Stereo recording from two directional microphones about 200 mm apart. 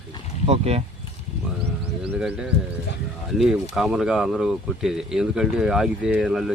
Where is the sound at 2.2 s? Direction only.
5° right (ahead or behind).